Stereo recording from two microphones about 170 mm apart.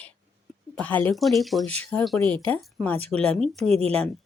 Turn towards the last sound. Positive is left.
turn(degrees=-35)  # may be behind; listen again after turning